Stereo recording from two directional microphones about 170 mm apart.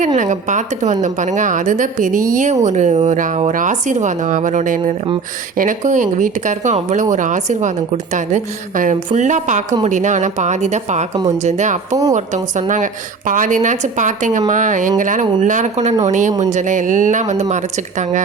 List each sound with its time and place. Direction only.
0.2 s a woman's voice: 45° right (ahead or behind)
11.1 s speech: 20° right (ahead or behind)
11.4 s a woman's voice: 45° right (ahead or behind)